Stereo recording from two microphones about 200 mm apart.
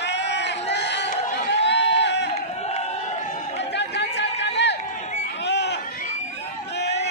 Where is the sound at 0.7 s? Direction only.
60° left (ahead or behind).